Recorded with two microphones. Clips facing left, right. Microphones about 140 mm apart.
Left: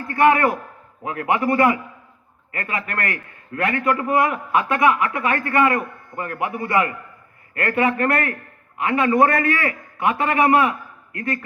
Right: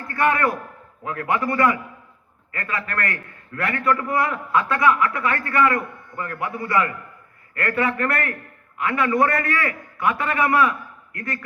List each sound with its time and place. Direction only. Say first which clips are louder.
0.1 s a man's voice: left 4 dB; 25° left (ahead or behind)